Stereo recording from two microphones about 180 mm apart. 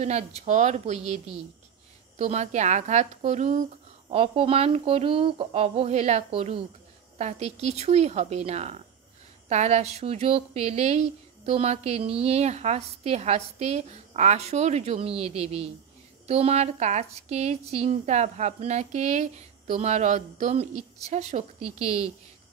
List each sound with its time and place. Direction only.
0.5 s speech: 40° right (ahead or behind)